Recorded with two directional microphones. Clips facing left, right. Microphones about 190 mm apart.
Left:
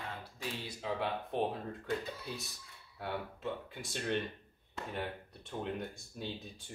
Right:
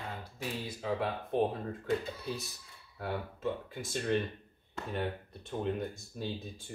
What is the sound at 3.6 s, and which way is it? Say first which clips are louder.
Speech: right 4 dB; centre (ahead or behind).